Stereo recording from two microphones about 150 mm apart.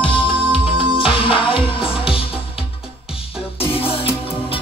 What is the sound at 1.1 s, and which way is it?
Music, 35° left (ahead or behind).